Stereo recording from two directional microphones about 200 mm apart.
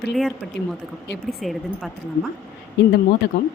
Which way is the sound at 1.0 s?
60° left (ahead or behind).